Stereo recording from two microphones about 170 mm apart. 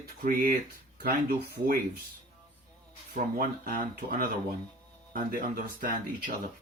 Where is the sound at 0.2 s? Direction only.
55° right (ahead or behind).